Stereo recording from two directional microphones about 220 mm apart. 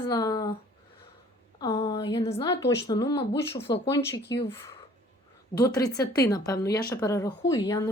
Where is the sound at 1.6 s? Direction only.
20° left (ahead or behind).